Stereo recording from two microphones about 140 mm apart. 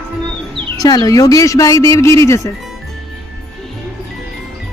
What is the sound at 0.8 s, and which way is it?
Speech, 25° left (ahead or behind).